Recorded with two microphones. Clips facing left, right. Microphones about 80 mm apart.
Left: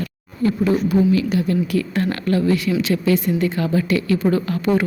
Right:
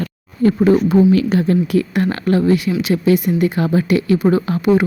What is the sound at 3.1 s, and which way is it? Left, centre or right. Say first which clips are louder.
A woman's voice: right 3 dB; centre.